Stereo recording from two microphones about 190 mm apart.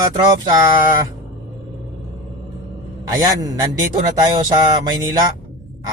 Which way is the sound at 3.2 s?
20° right (ahead or behind).